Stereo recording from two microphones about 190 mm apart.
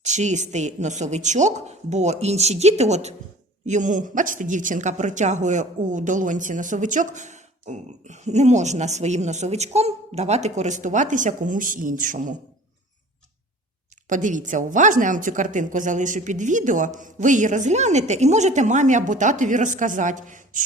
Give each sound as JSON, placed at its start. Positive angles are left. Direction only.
{"t": 0.0, "sound": "a woman's voice", "side_deg": -40}
{"t": 14.1, "sound": "a woman's voice", "side_deg": -40}